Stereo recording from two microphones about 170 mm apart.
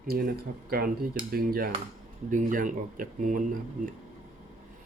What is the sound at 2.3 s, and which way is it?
Speech, 50° right (ahead or behind).